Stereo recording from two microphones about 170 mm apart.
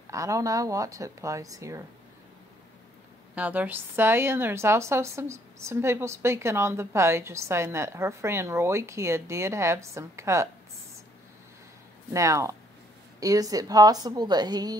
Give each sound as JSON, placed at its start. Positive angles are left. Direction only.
{"t": 0.1, "sound": "speech", "side_deg": -20}
{"t": 3.3, "sound": "a woman's voice", "side_deg": -10}
{"t": 12.1, "sound": "a woman's voice", "side_deg": -15}